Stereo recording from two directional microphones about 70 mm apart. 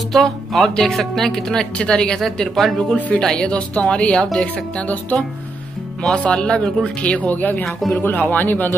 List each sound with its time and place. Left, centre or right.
0.1 s speech: centre; by 8.7 s left